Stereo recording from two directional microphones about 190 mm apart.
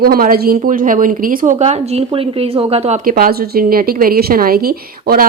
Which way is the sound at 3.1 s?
50° right (ahead or behind).